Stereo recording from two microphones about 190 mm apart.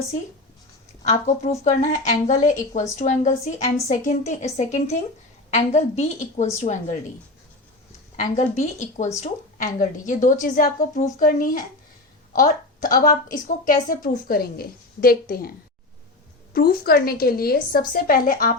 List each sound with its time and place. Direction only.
1.0 s speech: 35° left (ahead or behind)
8.1 s a woman's voice: 40° left (ahead or behind)